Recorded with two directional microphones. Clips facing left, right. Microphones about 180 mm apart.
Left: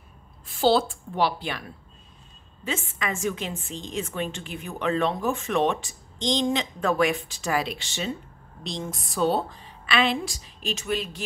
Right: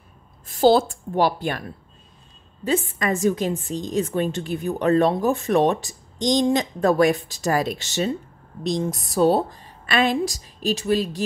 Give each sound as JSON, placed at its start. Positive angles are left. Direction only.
{"t": 0.5, "sound": "a woman's voice", "side_deg": -45}
{"t": 2.6, "sound": "a woman's voice", "side_deg": -40}